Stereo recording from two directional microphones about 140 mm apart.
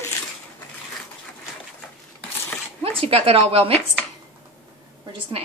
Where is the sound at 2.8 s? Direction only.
45° right (ahead or behind).